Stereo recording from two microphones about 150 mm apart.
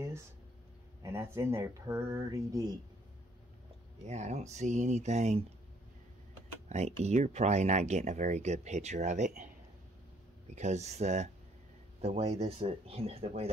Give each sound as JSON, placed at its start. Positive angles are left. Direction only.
{"t": 1.0, "sound": "speech", "side_deg": -15}
{"t": 4.1, "sound": "speech", "side_deg": -50}
{"t": 6.7, "sound": "speech", "side_deg": -50}
{"t": 10.5, "sound": "speech", "side_deg": -50}